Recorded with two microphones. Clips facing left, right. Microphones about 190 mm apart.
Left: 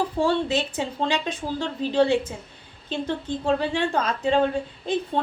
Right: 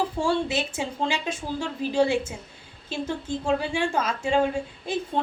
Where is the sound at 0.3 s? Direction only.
10° right (ahead or behind).